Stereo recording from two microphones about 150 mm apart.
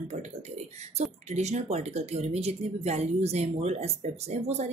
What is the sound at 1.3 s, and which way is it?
Speech, 50° right (ahead or behind).